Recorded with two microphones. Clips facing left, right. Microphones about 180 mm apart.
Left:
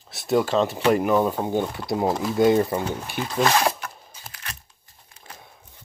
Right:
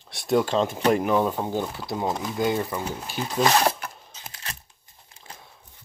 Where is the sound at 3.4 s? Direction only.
15° right (ahead or behind).